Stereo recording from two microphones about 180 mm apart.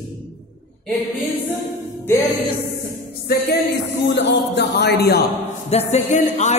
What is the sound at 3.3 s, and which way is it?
Music, 60° left (ahead or behind).